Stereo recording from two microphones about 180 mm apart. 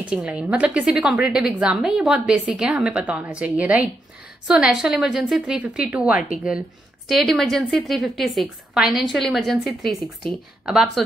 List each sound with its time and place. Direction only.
0.1 s a woman's voice: 5° right (ahead or behind)